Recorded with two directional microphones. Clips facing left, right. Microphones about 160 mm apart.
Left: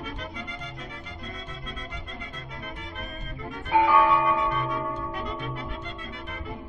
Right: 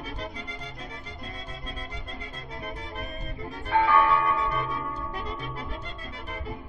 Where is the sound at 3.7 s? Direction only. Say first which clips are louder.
Left 2 dB; 10° left (ahead or behind).